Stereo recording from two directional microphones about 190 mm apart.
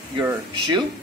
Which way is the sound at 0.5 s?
25° right (ahead or behind).